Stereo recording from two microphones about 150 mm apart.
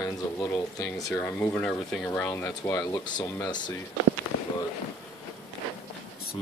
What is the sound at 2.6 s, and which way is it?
Speech, 20° left (ahead or behind).